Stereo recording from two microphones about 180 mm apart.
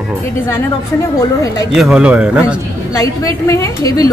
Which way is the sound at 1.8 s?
5° right (ahead or behind).